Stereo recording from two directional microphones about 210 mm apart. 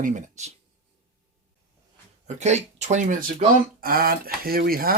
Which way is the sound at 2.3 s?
35° right (ahead or behind).